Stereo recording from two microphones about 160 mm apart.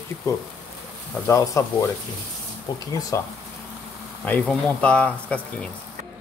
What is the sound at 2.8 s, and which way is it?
Speech, 20° left (ahead or behind).